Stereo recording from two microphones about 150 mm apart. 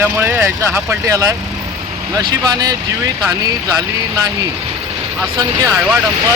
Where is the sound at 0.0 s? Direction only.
15° right (ahead or behind).